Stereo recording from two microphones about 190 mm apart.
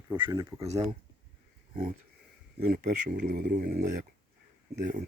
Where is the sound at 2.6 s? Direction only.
50° right (ahead or behind).